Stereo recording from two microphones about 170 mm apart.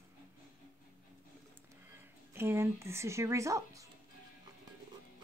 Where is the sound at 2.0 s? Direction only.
15° right (ahead or behind).